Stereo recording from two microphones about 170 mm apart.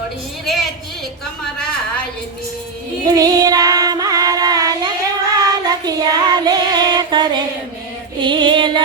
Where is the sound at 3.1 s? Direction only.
20° right (ahead or behind).